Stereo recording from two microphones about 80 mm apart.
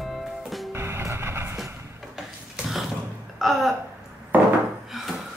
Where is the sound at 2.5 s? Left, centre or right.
Centre.